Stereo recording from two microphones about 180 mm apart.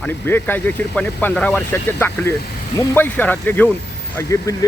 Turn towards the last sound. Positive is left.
turn(degrees=15)  # may be behind; listen again after turning